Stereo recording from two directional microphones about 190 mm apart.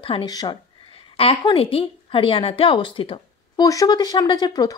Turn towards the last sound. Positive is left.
turn(degrees=20)  # may be behind; listen again after turning